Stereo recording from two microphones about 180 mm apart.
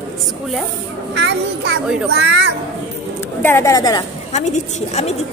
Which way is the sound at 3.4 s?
15° left (ahead or behind).